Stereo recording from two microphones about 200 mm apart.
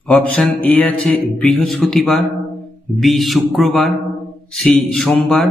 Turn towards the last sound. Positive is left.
turn(degrees=0)  # may be behind; listen again after turning